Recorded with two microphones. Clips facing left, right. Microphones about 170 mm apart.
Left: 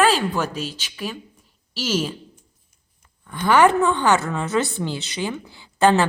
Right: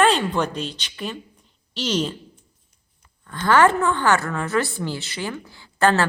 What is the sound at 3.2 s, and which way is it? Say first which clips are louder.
A woman's voice: left 1 dB; 15° left (ahead or behind).